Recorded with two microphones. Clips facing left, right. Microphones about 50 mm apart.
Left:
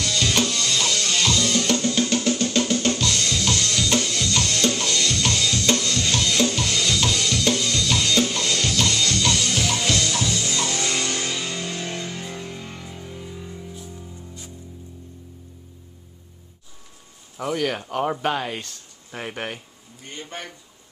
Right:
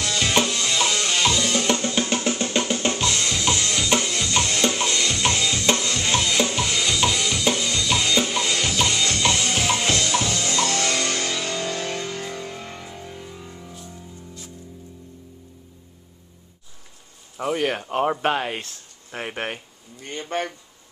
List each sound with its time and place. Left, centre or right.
0.0 s music: centre; by 12.0 s right
12.0 s music: right
12.4 s music: centre
13.0 s music: centre
17.6 s speech: right
20.2 s speech: right